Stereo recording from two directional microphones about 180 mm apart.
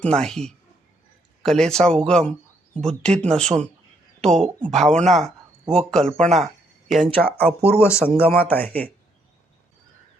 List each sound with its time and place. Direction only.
0.0 s speech: 5° left (ahead or behind)